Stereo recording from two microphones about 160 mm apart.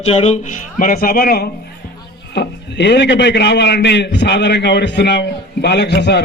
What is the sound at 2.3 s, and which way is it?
A man's voice, 90° left.